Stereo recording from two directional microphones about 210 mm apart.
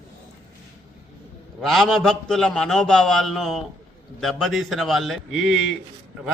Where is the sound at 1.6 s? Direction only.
Centre (ahead or behind).